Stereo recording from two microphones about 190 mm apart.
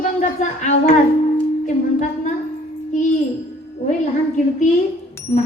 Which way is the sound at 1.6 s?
40° left (ahead or behind).